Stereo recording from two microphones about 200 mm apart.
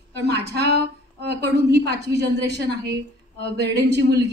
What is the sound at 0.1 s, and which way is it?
A woman's voice, 55° right (ahead or behind).